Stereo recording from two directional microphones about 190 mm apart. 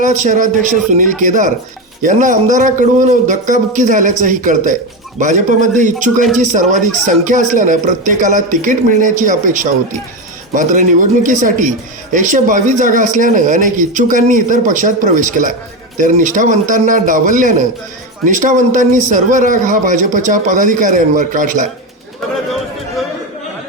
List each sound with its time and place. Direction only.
0.0 s a man's voice: 40° right (ahead or behind)